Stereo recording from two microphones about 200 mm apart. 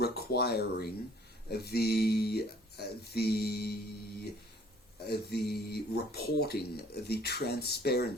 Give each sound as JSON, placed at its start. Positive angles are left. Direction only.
{"t": 0.0, "sound": "a sound", "side_deg": 50}
{"t": 1.5, "sound": "speech", "side_deg": 55}
{"t": 5.0, "sound": "speech", "side_deg": 55}